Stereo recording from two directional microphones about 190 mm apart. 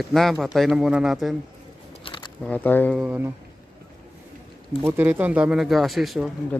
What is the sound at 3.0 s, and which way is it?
Speech, 10° right (ahead or behind).